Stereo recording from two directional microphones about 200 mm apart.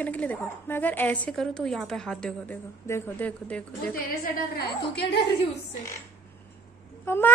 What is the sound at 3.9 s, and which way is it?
A woman's voice, 50° left (ahead or behind).